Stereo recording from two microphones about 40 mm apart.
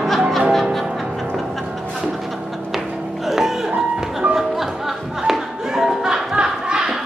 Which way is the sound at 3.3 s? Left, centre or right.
Centre.